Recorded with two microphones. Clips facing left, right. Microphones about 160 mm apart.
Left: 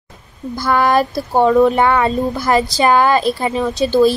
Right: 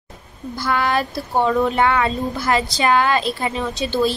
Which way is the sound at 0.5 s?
40° left (ahead or behind).